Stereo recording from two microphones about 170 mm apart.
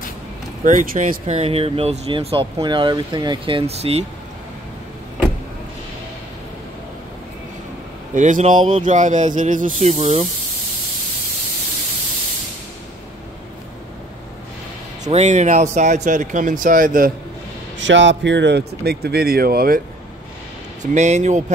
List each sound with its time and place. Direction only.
0.7 s speech: 50° right (ahead or behind)
8.1 s speech: 45° right (ahead or behind)
15.0 s speech: 45° right (ahead or behind)
17.7 s speech: 90° right; by 19.8 s 60° right (ahead or behind)
20.8 s speech: 45° right (ahead or behind)